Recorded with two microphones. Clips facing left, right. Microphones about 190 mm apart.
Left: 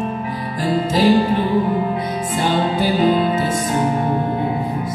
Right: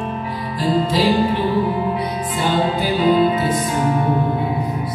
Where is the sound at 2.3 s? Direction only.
45° left (ahead or behind).